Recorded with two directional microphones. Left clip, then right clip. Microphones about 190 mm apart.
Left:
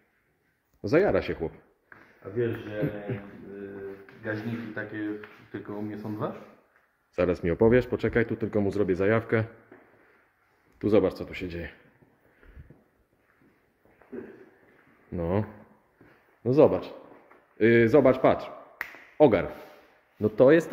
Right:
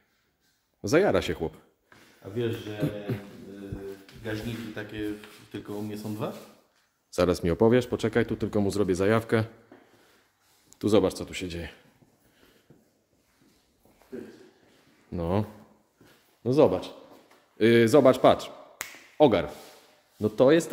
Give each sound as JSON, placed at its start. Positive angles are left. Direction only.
{"t": 0.7, "sound": "speech", "side_deg": -15}
{"t": 4.7, "sound": "speech", "side_deg": -35}
{"t": 7.2, "sound": "speech", "side_deg": -20}
{"t": 10.7, "sound": "speech", "side_deg": -20}
{"t": 15.0, "sound": "speech", "side_deg": -10}
{"t": 16.4, "sound": "speech", "side_deg": 0}
{"t": 17.6, "sound": "speech", "side_deg": -15}
{"t": 19.1, "sound": "a man's voice", "side_deg": -5}